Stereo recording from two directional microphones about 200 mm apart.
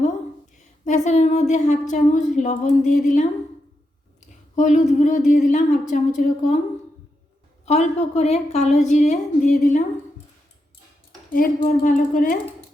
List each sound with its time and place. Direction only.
0.9 s a woman's voice: 35° left (ahead or behind)
4.5 s a woman's voice: 35° left (ahead or behind)
7.6 s a woman's voice: 35° left (ahead or behind)
11.3 s speech: 40° left (ahead or behind)